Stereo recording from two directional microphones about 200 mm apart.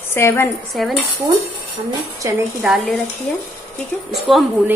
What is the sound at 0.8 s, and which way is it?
Speech, centre (ahead or behind).